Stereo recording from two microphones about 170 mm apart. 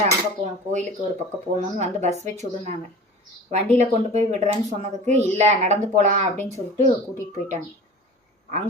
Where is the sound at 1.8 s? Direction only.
40° right (ahead or behind).